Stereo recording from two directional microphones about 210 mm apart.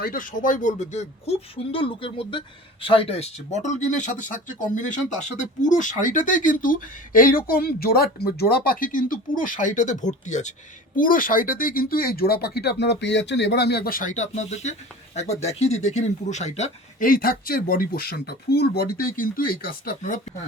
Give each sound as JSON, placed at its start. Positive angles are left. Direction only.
{"t": 0.0, "sound": "speech", "side_deg": 40}